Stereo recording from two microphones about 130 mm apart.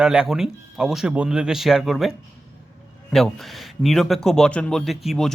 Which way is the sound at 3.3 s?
Centre (ahead or behind).